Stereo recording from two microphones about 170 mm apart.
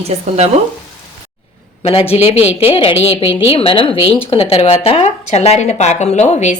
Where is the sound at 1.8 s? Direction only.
35° left (ahead or behind).